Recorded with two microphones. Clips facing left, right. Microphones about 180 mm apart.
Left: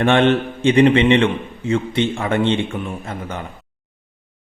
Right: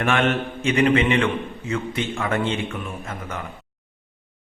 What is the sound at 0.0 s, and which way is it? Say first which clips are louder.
A man's voice: left 6 dB; 30° left (ahead or behind).